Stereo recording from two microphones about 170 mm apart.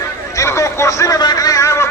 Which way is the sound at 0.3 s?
20° left (ahead or behind).